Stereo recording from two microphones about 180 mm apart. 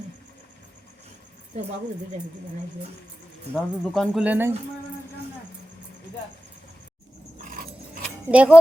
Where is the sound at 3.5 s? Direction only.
Centre (ahead or behind).